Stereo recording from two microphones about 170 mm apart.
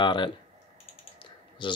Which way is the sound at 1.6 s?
30° left (ahead or behind).